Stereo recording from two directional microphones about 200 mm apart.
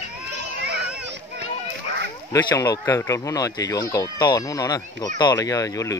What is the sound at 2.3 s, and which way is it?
Speech, 15° left (ahead or behind).